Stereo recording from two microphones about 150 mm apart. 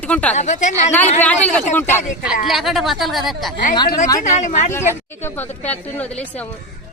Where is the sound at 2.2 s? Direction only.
Centre (ahead or behind).